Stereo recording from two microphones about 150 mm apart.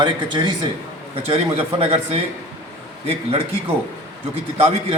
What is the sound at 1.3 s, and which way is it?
Speech, 40° right (ahead or behind).